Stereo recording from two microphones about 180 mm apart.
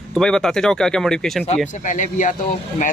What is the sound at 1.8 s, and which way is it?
Speech, 45° left (ahead or behind).